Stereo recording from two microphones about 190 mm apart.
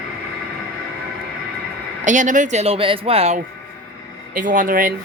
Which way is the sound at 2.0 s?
40° right (ahead or behind).